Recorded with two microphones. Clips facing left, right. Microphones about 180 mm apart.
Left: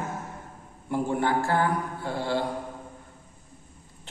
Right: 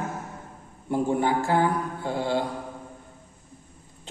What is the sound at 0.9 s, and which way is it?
Mantra, 15° right (ahead or behind).